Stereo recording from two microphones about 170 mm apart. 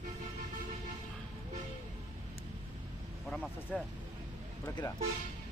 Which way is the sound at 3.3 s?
Centre (ahead or behind).